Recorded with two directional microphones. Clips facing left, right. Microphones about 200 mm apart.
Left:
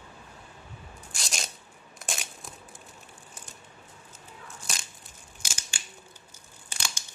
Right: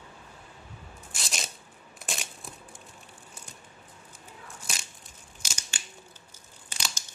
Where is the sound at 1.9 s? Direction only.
Centre (ahead or behind).